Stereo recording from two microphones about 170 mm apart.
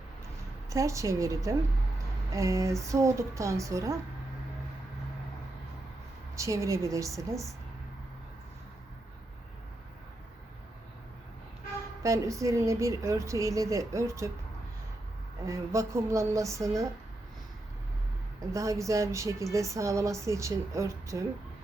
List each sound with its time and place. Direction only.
0.7 s a woman's voice: 20° right (ahead or behind)
6.3 s a woman's voice: 20° right (ahead or behind)
12.0 s a woman's voice: 20° right (ahead or behind)
15.4 s a woman's voice: 20° right (ahead or behind)
18.5 s a woman's voice: 20° right (ahead or behind)